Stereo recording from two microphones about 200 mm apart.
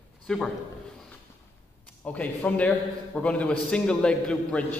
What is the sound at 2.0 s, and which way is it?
A man's voice, 5° left (ahead or behind).